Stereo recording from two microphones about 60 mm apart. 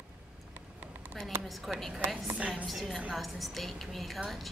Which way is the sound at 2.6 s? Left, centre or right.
Centre.